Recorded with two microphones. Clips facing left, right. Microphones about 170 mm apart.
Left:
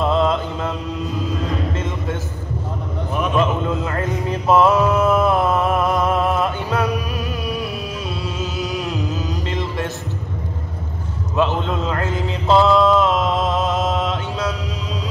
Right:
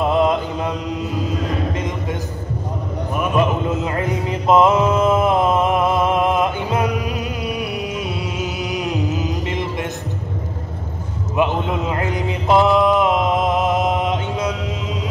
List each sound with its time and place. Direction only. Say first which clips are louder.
0.1 s mantra: right 1 dB; 15° right (ahead or behind)
1.7 s a sound: right 1 dB; 15° right (ahead or behind)
3.7 s mantra: right 1 dB; 20° right (ahead or behind)
11.3 s mantra: right 1 dB; 15° right (ahead or behind)